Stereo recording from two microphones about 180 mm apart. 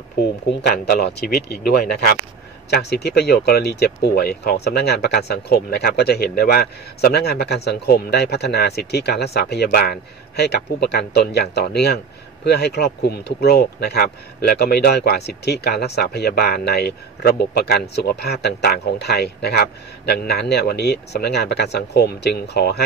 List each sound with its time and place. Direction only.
0.2 s speech: 60° left (ahead or behind)